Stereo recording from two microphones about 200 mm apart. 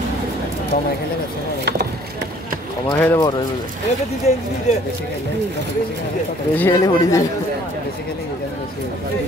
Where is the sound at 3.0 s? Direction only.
15° left (ahead or behind).